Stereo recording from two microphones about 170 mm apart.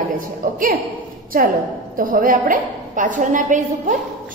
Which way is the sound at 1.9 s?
55° right (ahead or behind).